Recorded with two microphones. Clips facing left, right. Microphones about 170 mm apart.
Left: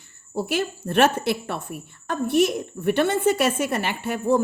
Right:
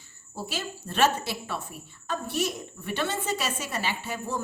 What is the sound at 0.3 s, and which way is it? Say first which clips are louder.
A woman's voice: left 10 dB; 60° left (ahead or behind).